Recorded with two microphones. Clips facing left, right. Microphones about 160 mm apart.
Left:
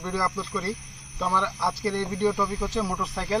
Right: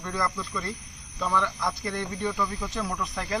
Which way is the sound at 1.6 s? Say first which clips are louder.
Left 4 dB; 30° left (ahead or behind).